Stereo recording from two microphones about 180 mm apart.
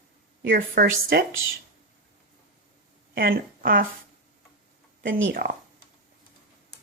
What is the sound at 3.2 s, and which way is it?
Speech, 55° right (ahead or behind).